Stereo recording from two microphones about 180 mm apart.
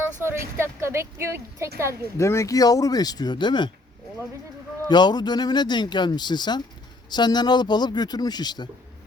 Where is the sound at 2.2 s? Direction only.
15° left (ahead or behind).